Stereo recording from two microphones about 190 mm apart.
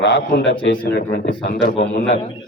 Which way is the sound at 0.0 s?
70° left (ahead or behind).